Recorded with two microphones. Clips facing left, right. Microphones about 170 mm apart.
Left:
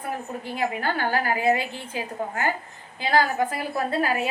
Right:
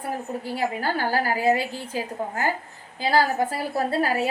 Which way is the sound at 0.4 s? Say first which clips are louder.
Even; 35° right (ahead or behind).